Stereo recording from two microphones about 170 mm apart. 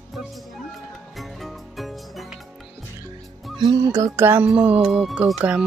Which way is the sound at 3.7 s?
20° right (ahead or behind).